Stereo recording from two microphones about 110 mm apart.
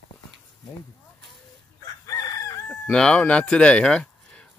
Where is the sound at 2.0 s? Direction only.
30° left (ahead or behind).